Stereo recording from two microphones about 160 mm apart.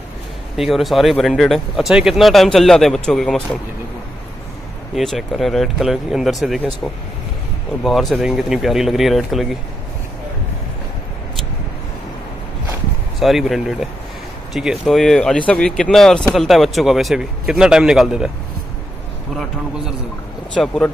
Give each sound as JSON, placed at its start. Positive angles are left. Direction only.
{"t": 0.6, "sound": "speech", "side_deg": 0}
{"t": 4.9, "sound": "speech", "side_deg": 0}
{"t": 13.2, "sound": "speech", "side_deg": 0}
{"t": 20.6, "sound": "speech", "side_deg": 5}